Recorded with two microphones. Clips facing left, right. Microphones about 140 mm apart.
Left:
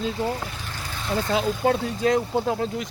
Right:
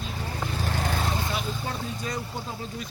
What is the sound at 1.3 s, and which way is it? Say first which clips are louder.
Speech: left 10 dB; 85° left.